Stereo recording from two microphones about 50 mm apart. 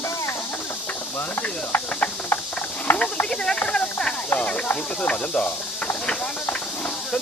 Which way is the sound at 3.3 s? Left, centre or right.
Centre.